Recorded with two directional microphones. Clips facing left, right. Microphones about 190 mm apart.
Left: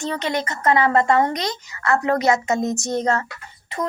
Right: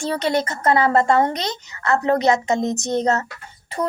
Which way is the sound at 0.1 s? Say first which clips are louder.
Right 6 dB; 35° right (ahead or behind).